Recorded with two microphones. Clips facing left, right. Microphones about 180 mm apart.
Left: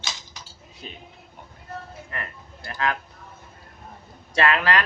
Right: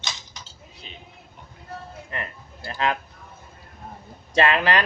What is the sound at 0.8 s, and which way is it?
Speech, 45° left (ahead or behind).